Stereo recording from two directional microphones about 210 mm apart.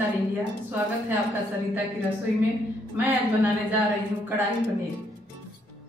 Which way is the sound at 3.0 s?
10° right (ahead or behind).